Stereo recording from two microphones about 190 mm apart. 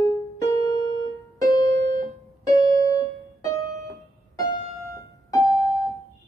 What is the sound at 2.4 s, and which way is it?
Piano, 20° left (ahead or behind).